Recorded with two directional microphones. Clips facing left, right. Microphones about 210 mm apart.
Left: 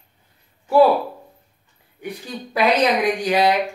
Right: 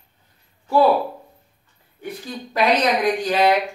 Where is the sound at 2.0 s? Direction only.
15° left (ahead or behind).